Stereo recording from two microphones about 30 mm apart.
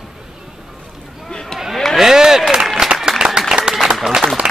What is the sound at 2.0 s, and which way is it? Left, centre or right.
Speech, centre.